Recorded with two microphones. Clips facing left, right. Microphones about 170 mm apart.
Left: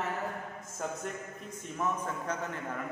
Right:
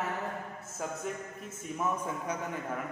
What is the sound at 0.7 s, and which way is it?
A man's voice, 5° right (ahead or behind).